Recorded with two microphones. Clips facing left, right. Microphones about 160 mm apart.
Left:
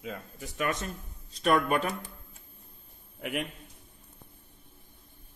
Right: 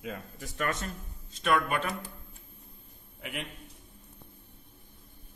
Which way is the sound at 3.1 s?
45° left (ahead or behind).